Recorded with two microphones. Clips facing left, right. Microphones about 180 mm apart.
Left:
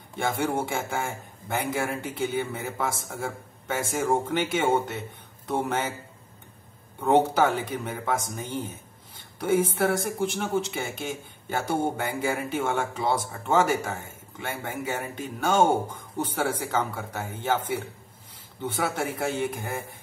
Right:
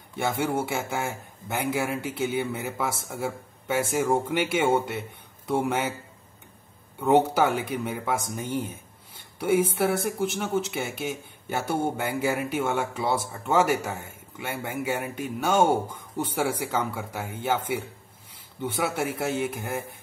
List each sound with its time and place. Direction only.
0.2 s speech: 5° right (ahead or behind)
7.0 s speech: 10° right (ahead or behind)
15.9 s speech: 10° left (ahead or behind)
16.3 s speech: 10° right (ahead or behind)
18.6 s speech: 10° right (ahead or behind)